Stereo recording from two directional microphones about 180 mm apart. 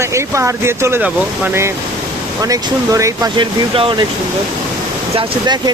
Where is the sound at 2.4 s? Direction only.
20° right (ahead or behind).